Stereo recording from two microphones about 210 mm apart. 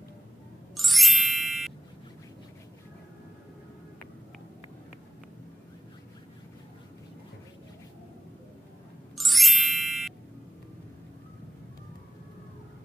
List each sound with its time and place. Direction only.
0.7 s music: centre (ahead or behind)
9.1 s music: centre (ahead or behind)